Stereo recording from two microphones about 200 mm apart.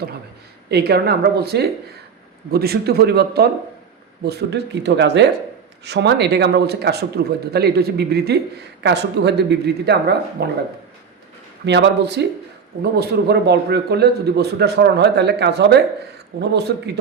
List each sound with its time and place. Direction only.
0.7 s a man's voice: 55° right (ahead or behind)
11.6 s a man's voice: 60° right (ahead or behind)